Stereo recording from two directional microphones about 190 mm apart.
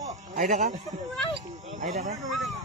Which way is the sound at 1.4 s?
40° right (ahead or behind).